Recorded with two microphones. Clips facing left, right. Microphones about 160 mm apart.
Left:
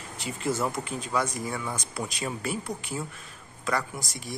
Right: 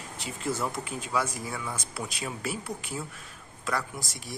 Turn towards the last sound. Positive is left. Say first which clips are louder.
# left 2 dB
turn(degrees=0)  # may be behind; listen again after turning